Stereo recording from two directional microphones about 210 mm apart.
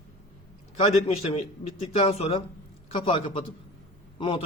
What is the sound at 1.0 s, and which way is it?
A man's voice, 30° left (ahead or behind).